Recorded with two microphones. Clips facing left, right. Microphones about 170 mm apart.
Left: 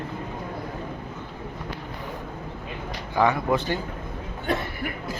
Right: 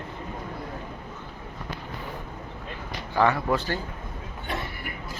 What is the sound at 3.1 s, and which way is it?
Speech, 15° left (ahead or behind).